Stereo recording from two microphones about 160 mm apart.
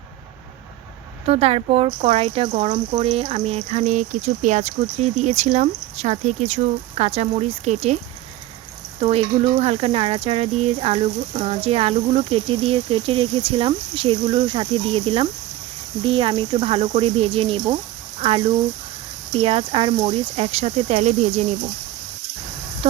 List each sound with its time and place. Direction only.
1.3 s speech: 40° right (ahead or behind)
9.0 s speech: 40° right (ahead or behind)